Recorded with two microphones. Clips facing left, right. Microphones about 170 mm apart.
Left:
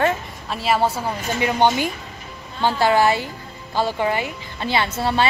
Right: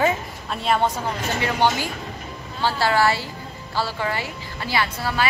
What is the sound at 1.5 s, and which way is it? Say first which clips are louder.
A woman's voice: left 3 dB; 20° left (ahead or behind).